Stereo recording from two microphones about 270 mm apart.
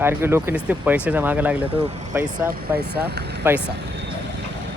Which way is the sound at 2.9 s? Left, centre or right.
Right.